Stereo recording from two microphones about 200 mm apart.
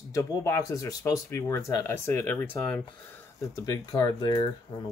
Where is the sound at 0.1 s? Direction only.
15° left (ahead or behind).